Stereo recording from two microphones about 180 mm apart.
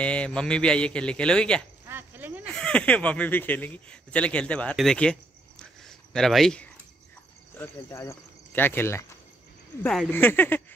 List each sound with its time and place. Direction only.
0.0 s a man's voice: 5° left (ahead or behind)
1.9 s a sound: 10° right (ahead or behind)
2.5 s speech: 5° left (ahead or behind)
5.9 s a sound: centre (ahead or behind)
7.5 s speech: 15° left (ahead or behind)
10.1 s speech: 10° left (ahead or behind)